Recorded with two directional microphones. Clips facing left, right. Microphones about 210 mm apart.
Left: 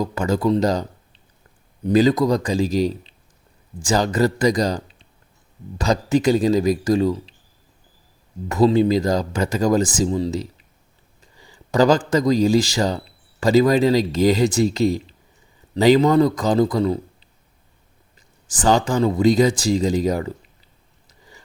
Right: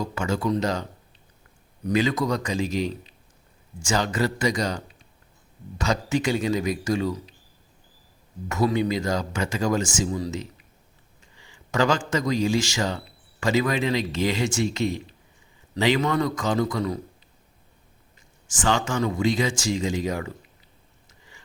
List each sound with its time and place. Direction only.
0.0 s speech: 40° left (ahead or behind)
8.4 s speech: 35° left (ahead or behind)
18.4 s speech: 35° left (ahead or behind)
21.1 s a sound: 35° left (ahead or behind)